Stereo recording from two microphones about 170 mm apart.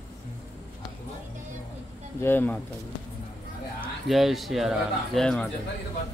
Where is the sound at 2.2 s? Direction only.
10° left (ahead or behind).